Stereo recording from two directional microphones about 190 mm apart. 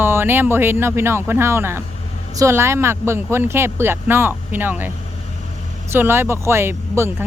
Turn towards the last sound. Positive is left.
turn(degrees=-15)  # may be behind; listen again after turning